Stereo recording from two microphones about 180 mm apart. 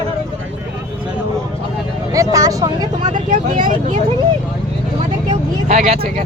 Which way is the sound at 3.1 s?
45° right (ahead or behind).